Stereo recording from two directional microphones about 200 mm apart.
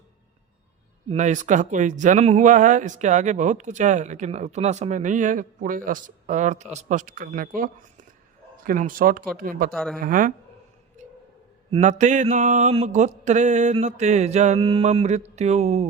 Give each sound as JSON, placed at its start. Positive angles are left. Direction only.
{"t": 1.0, "sound": "speech", "side_deg": -35}
{"t": 9.7, "sound": "speech", "side_deg": 0}
{"t": 10.0, "sound": "speech", "side_deg": -40}
{"t": 11.7, "sound": "speech", "side_deg": -35}